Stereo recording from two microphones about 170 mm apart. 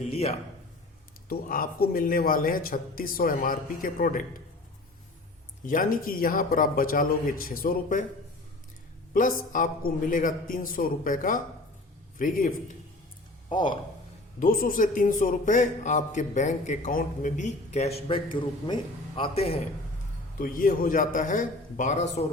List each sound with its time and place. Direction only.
0.0 s a man's voice: 35° left (ahead or behind)
1.3 s a man's voice: 60° left (ahead or behind)
5.6 s a man's voice: 55° left (ahead or behind)
9.1 s a man's voice: 50° left (ahead or behind)
13.5 s speech: 25° left (ahead or behind)
14.3 s a man's voice: 55° left (ahead or behind)
18.3 s a man's voice: 30° left (ahead or behind)
20.4 s a man's voice: 55° left (ahead or behind)